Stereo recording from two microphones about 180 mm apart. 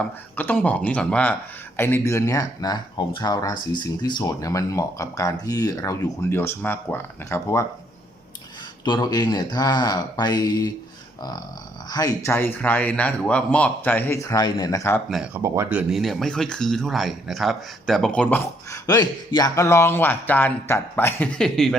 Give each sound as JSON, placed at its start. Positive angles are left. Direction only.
{"t": 0.3, "sound": "speech", "side_deg": 10}
{"t": 8.8, "sound": "speech", "side_deg": 25}
{"t": 15.1, "sound": "speech", "side_deg": -5}